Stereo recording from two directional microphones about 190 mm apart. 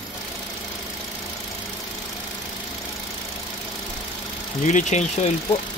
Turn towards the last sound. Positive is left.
turn(degrees=40)  # may be behind; listen again after turning